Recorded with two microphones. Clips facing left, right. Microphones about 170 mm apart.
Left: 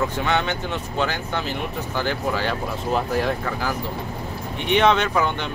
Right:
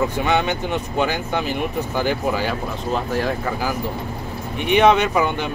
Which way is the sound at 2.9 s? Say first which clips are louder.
Even; centre (ahead or behind).